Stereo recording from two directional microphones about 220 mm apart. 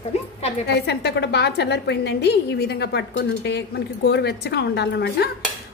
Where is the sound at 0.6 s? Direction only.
50° left (ahead or behind).